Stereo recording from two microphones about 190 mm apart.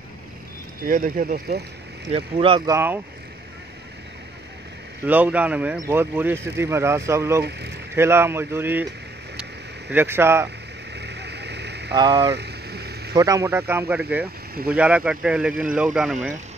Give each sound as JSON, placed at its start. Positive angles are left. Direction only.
{"t": 0.8, "sound": "speech", "side_deg": -45}
{"t": 2.1, "sound": "speech", "side_deg": -30}
{"t": 2.7, "sound": "speech", "side_deg": -10}
{"t": 5.0, "sound": "speech", "side_deg": -10}
{"t": 7.4, "sound": "speech", "side_deg": -60}
{"t": 7.9, "sound": "speech", "side_deg": -15}
{"t": 9.9, "sound": "speech", "side_deg": -10}
{"t": 11.0, "sound": "vehicle", "side_deg": -60}
{"t": 11.9, "sound": "speech", "side_deg": -25}
{"t": 12.4, "sound": "vehicle", "side_deg": -60}
{"t": 13.1, "sound": "speech", "side_deg": -20}